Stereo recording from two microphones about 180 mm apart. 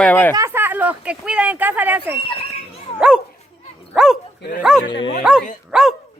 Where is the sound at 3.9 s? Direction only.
5° right (ahead or behind).